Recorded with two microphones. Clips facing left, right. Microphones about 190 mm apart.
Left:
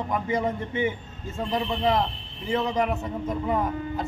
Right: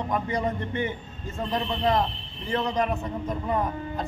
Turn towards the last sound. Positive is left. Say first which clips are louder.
# left 1 dB
turn(degrees=5)  # may be behind; listen again after turning